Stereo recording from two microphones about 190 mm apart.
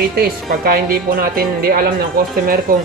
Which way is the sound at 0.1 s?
50° right (ahead or behind).